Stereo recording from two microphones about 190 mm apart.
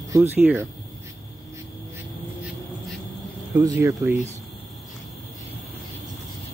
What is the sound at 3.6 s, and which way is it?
Speech, 15° right (ahead or behind).